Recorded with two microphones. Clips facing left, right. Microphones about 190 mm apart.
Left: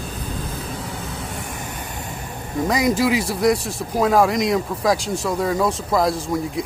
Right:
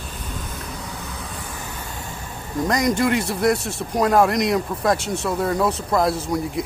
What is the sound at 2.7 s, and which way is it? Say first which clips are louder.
Speech: left 1 dB; centre (ahead or behind).